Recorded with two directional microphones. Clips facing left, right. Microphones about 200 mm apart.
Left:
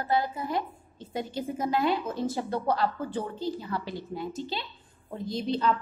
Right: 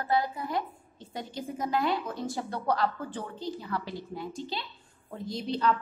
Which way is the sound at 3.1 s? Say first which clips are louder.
Left 4 dB; 5° left (ahead or behind).